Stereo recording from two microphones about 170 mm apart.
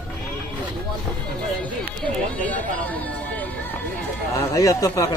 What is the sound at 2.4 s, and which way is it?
Music, 10° left (ahead or behind).